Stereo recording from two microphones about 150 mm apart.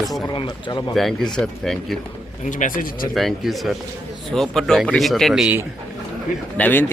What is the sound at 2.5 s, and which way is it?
Speech, 60° left (ahead or behind).